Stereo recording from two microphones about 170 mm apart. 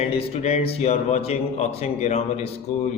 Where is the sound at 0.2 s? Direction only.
35° left (ahead or behind).